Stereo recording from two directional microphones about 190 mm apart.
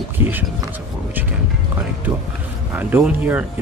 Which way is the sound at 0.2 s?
10° right (ahead or behind).